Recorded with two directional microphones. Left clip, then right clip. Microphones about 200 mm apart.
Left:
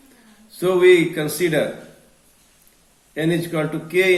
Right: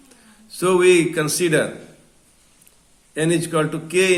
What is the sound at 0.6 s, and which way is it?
Mantra, 50° right (ahead or behind).